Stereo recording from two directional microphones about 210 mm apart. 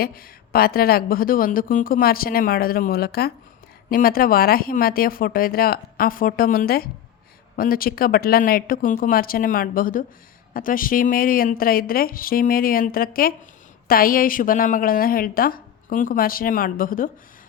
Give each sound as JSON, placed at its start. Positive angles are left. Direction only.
{"t": 0.0, "sound": "speech", "side_deg": 45}